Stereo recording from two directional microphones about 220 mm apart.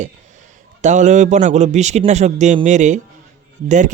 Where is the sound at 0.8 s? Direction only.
35° right (ahead or behind).